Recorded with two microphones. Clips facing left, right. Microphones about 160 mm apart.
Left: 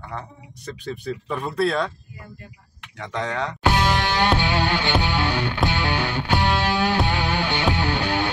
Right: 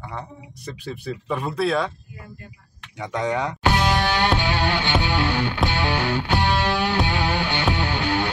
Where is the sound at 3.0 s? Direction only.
10° right (ahead or behind).